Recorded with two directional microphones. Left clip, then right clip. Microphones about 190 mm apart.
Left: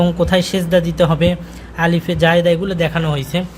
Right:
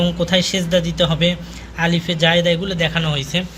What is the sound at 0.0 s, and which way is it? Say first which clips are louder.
Speech: left 2 dB; 40° left (ahead or behind).